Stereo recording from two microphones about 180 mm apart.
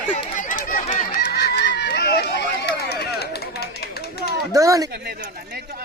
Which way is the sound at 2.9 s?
65° left (ahead or behind).